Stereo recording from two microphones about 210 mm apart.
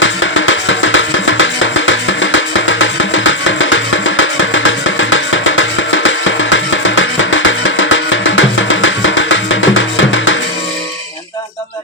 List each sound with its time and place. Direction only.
0.0 s music: 65° left (ahead or behind)